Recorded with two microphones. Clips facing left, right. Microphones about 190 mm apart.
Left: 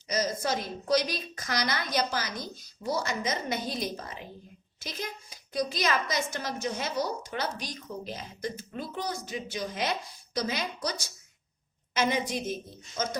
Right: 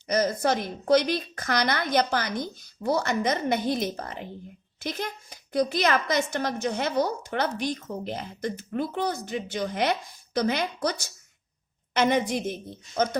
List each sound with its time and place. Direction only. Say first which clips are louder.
0.1 s a woman's voice: right 5 dB; 60° right (ahead or behind)
11.9 s a woman's voice: right 5 dB; 60° right (ahead or behind)